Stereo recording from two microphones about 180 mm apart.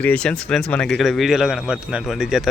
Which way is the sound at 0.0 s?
5° left (ahead or behind).